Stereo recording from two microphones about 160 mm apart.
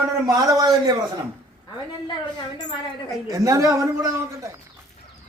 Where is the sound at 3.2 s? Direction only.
20° right (ahead or behind).